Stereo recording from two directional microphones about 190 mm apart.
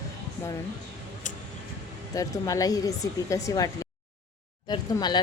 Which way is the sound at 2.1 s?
20° left (ahead or behind).